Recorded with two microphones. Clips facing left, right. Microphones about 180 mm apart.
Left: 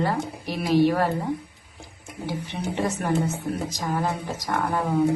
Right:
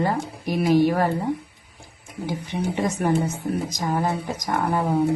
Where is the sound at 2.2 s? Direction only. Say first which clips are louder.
Right 3 dB; 15° right (ahead or behind).